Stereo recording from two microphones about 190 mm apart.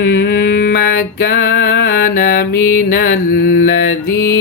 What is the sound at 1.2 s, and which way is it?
Mantra, 60° left (ahead or behind).